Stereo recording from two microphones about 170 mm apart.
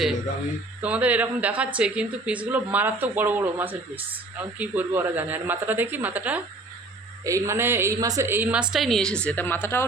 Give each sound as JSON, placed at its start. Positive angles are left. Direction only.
{"t": 0.8, "sound": "speech", "side_deg": -10}
{"t": 8.7, "sound": "a woman's voice", "side_deg": 0}